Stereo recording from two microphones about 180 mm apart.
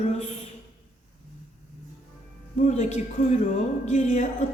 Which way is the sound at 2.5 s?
40° left (ahead or behind).